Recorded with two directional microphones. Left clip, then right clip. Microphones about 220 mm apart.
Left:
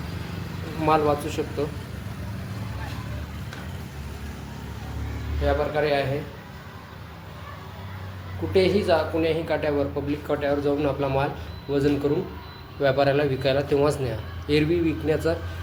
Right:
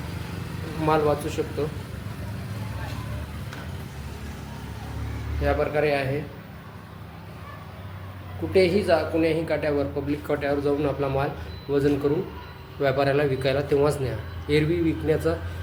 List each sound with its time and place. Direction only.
0.6 s speech: centre (ahead or behind)
5.4 s a man's voice: 10° right (ahead or behind)
8.5 s speech: 5° right (ahead or behind)